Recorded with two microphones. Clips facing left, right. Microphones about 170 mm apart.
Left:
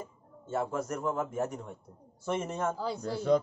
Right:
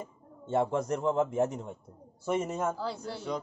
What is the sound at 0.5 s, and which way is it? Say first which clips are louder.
A man's voice: right 4 dB; 25° right (ahead or behind).